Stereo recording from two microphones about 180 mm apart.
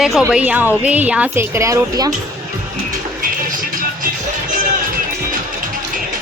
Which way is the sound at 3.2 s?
50° right (ahead or behind).